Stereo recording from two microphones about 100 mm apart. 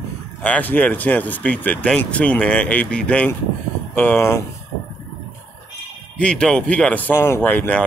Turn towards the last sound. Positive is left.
turn(degrees=15)  # may be behind; listen again after turning